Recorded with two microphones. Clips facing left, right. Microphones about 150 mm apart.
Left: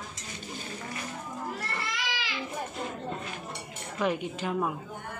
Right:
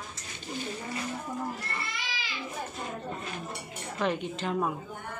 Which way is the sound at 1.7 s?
85° left.